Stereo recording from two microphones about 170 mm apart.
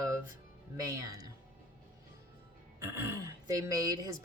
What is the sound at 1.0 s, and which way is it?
Speech, 20° right (ahead or behind).